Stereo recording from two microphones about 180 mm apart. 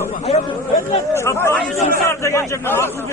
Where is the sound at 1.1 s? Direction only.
15° left (ahead or behind).